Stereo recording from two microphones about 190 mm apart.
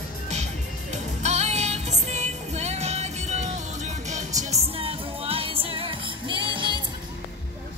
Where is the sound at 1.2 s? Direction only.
35° right (ahead or behind).